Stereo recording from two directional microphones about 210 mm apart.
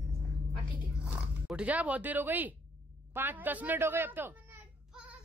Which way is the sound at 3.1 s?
10° right (ahead or behind).